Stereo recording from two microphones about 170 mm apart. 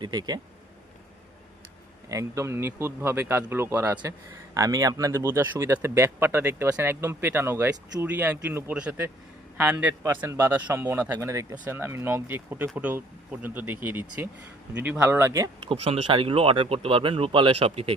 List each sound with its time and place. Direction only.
0.0 s speech: 25° right (ahead or behind)
2.0 s a man's voice: 20° right (ahead or behind)
15.6 s speech: 35° right (ahead or behind)